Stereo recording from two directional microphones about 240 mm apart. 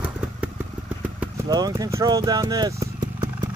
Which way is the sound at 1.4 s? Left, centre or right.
Centre.